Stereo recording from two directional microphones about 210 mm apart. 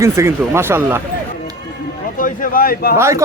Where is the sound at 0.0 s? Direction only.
15° right (ahead or behind).